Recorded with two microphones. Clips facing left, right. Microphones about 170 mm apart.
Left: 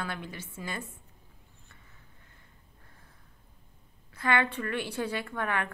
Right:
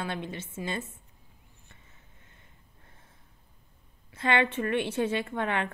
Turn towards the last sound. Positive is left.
turn(degrees=-25)  # may be behind; listen again after turning